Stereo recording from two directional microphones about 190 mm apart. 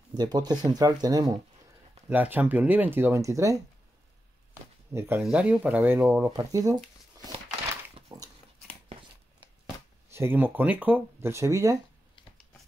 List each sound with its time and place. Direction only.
0.1 s speech: 20° right (ahead or behind)
4.9 s speech: 15° right (ahead or behind)
7.9 s a sound: 20° right (ahead or behind)
10.1 s speech: 10° right (ahead or behind)